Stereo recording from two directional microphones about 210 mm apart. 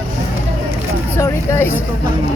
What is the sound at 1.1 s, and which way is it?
Speech, 15° left (ahead or behind).